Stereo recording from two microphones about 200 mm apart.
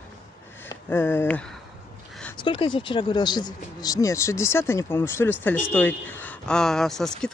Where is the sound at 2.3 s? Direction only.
25° left (ahead or behind).